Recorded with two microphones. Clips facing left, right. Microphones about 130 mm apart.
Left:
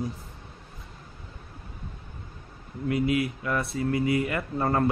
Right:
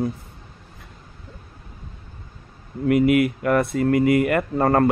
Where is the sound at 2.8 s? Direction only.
60° right (ahead or behind).